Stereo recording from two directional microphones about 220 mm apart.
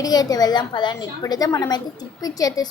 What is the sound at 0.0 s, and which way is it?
A woman's voice, 15° left (ahead or behind).